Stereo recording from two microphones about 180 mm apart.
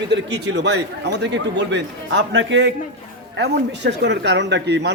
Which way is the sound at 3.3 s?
70° right (ahead or behind).